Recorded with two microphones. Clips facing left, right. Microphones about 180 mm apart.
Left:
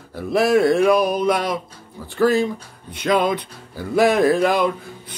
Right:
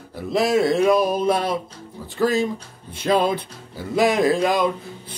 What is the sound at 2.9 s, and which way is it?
Music, 30° right (ahead or behind).